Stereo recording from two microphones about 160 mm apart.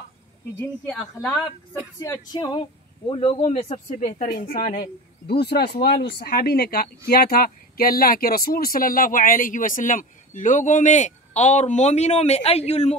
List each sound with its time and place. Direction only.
0.6 s speech: 5° left (ahead or behind); by 4.3 s 45° left (ahead or behind)
4.5 s speech: 65° left (ahead or behind); by 5.9 s 90° left
6.1 s speech: 75° left (ahead or behind); by 12.9 s 40° left (ahead or behind)